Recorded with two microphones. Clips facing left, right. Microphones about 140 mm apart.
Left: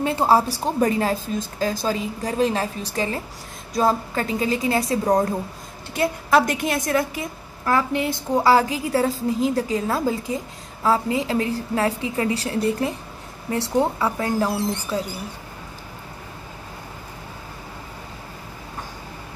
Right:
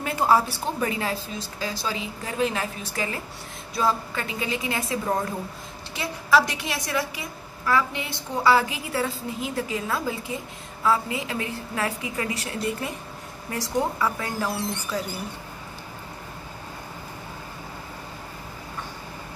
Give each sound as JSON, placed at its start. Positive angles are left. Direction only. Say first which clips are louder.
{"t": 0.0, "sound": "a woman's voice", "louder": "left 3 dB", "side_deg": 30}
{"t": 5.9, "sound": "a woman's voice", "louder": "left 3 dB", "side_deg": 50}